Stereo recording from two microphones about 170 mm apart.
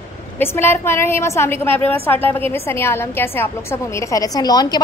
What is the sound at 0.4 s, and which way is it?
A woman's voice, 15° left (ahead or behind).